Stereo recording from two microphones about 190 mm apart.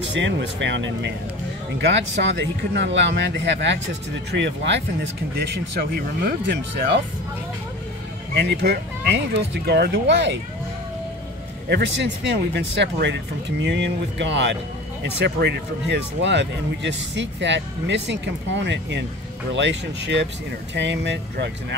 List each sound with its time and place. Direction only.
0.1 s speech: 70° right (ahead or behind)
8.4 s speech: 65° right (ahead or behind)
11.7 s speech: 65° right (ahead or behind)